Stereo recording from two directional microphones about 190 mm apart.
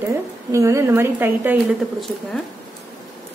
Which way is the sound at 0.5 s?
15° right (ahead or behind).